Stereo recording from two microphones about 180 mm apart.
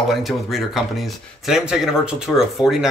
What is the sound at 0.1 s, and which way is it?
Speech, centre (ahead or behind).